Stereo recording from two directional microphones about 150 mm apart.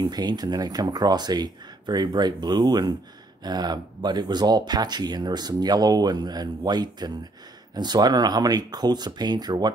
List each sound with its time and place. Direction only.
0.0 s speech: 25° right (ahead or behind)